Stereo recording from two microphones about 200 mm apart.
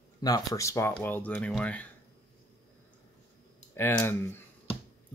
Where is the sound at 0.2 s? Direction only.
15° left (ahead or behind).